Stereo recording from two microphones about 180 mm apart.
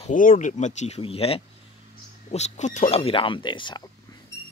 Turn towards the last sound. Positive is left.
turn(degrees=20)  # may be behind; listen again after turning